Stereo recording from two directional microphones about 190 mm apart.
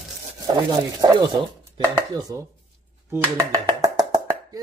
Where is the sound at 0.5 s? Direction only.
20° right (ahead or behind).